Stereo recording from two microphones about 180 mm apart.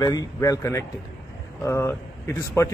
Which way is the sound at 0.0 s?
20° left (ahead or behind).